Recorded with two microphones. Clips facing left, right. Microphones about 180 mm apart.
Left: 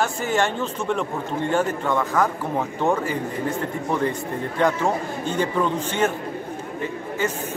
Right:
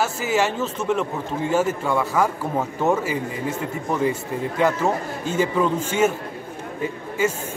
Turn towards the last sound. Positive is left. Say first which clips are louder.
# right 3 dB
turn(degrees=-10)  # may be behind; listen again after turning